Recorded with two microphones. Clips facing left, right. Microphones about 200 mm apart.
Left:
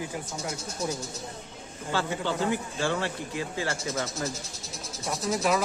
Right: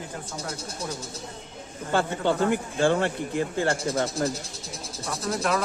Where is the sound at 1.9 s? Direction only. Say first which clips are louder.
Right 5 dB; 55° right (ahead or behind).